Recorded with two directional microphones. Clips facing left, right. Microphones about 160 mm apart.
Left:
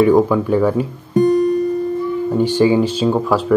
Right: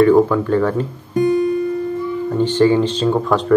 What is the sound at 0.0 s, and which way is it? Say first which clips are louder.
Speech: even; 10° left (ahead or behind).